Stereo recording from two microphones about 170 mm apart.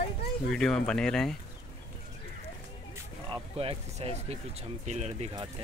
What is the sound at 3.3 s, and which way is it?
Speech, 35° right (ahead or behind).